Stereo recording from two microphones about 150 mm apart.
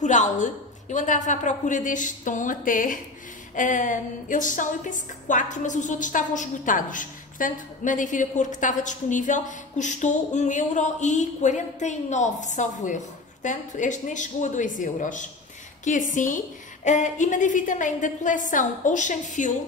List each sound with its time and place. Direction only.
0.0 s a woman's voice: 55° left (ahead or behind)